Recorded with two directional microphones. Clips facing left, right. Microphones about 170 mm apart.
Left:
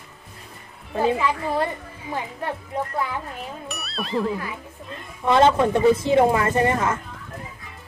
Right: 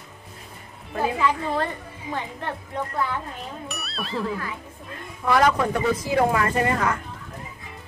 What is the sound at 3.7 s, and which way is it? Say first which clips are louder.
Music: left 2 dB; centre (ahead or behind).